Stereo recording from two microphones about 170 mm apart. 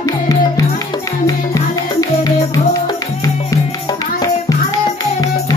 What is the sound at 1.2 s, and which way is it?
Music, 20° left (ahead or behind).